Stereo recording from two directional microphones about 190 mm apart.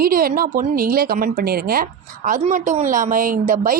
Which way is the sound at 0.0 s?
50° right (ahead or behind).